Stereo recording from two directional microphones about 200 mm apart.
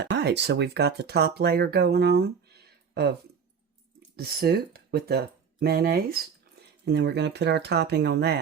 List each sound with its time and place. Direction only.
0.0 s speech: 60° right (ahead or behind)
4.2 s speech: 50° right (ahead or behind)